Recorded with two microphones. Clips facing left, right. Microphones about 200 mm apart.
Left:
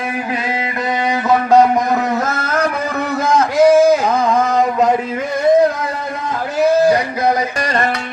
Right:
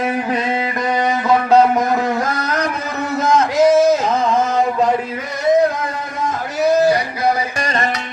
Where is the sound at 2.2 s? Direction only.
25° left (ahead or behind).